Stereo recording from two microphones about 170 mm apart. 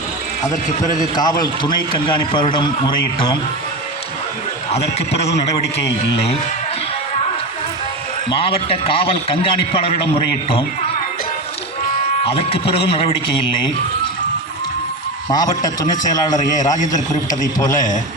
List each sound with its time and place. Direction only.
1.1 s a man's voice: 25° left (ahead or behind)
8.3 s a man's voice: 35° left (ahead or behind)
12.2 s a man's voice: 35° left (ahead or behind)
15.3 s a man's voice: 25° left (ahead or behind)